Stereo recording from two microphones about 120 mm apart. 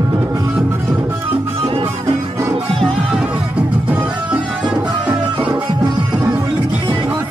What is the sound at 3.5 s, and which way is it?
Music, 10° right (ahead or behind).